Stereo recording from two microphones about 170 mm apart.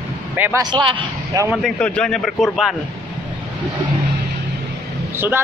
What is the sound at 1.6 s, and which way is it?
A man's voice, 5° left (ahead or behind).